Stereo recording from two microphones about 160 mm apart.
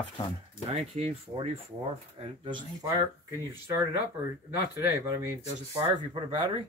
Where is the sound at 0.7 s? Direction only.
40° right (ahead or behind).